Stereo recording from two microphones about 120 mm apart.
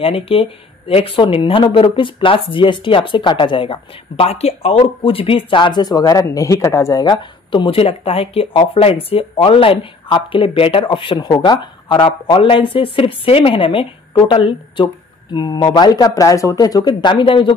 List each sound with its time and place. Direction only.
0.0 s speech: 50° left (ahead or behind)